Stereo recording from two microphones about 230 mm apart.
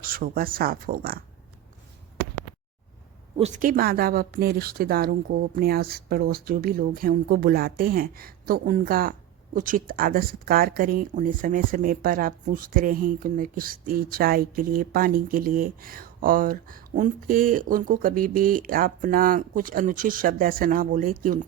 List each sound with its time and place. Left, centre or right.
0.0 s speech: right
3.3 s speech: right